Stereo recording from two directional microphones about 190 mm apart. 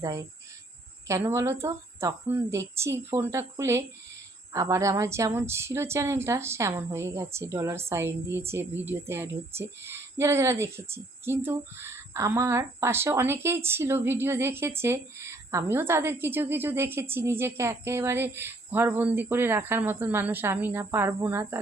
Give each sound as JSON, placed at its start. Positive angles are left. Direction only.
{"t": 0.0, "sound": "speech", "side_deg": -15}